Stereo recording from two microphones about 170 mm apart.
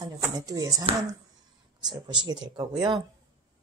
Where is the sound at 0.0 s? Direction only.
20° right (ahead or behind).